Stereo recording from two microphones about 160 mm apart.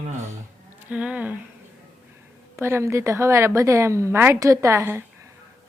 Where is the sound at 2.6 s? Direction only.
15° right (ahead or behind).